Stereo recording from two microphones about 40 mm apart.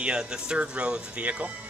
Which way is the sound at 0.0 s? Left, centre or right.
Right.